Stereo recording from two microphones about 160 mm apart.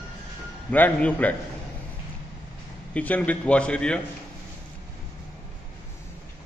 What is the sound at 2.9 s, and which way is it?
A man's voice, 10° left (ahead or behind).